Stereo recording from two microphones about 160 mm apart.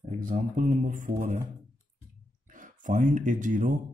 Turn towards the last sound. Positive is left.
turn(degrees=-50)  # may be behind; listen again after turning